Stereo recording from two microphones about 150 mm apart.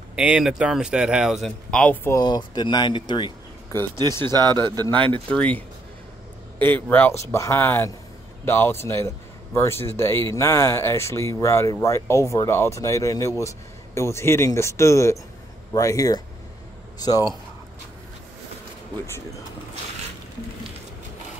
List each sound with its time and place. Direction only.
0.1 s speech: 10° right (ahead or behind); by 2.1 s 10° left (ahead or behind)
2.1 s speech: 25° left (ahead or behind)
4.2 s speech: 30° right (ahead or behind)
5.3 s a man's voice: 10° left (ahead or behind)
6.6 s a man's voice: 15° left (ahead or behind)